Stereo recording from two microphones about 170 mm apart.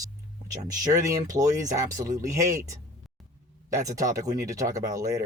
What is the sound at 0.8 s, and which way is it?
Speech, 20° right (ahead or behind).